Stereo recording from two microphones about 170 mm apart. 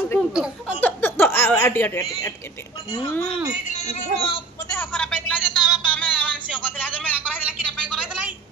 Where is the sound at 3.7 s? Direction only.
40° left (ahead or behind).